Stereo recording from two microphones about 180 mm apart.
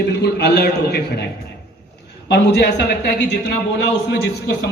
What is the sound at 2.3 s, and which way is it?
Speech, 65° left (ahead or behind).